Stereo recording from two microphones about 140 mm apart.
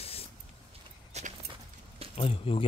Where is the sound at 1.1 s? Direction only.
55° right (ahead or behind).